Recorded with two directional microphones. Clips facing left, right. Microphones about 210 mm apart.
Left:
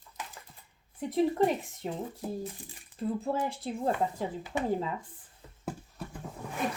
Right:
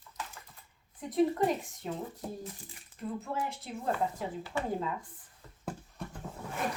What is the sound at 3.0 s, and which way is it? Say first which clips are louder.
Speech: left 5 dB; 35° left (ahead or behind).